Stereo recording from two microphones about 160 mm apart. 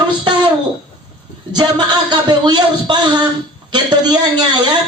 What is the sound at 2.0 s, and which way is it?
Speech, 30° right (ahead or behind).